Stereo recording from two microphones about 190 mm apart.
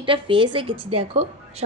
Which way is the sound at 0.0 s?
25° right (ahead or behind).